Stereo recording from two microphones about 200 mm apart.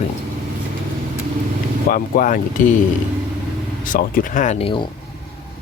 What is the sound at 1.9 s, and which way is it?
Speech, 40° left (ahead or behind).